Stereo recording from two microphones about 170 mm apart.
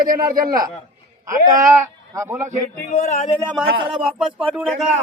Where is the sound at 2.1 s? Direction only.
15° right (ahead or behind).